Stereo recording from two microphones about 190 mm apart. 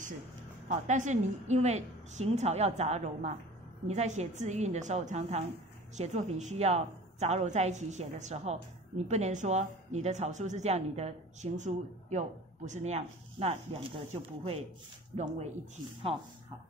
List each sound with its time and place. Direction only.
0.7 s a woman's voice: 40° right (ahead or behind)